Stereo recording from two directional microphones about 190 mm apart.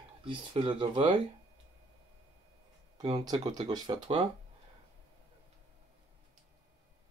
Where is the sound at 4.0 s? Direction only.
30° right (ahead or behind).